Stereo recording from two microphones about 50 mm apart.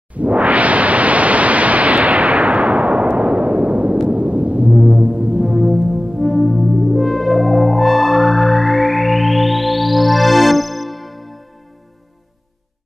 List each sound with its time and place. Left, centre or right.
0.1 s pink noise: right
4.1 s a sound: right
4.8 s music: centre
5.4 s music: centre